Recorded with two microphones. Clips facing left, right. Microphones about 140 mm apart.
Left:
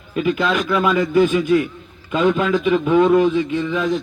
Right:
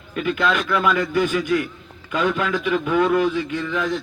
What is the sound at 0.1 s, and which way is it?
A man's voice, 20° left (ahead or behind).